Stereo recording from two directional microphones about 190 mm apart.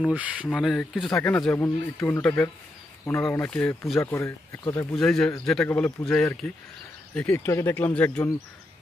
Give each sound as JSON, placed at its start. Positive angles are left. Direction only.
{"t": 0.0, "sound": "speech", "side_deg": -5}
{"t": 4.9, "sound": "speech", "side_deg": 5}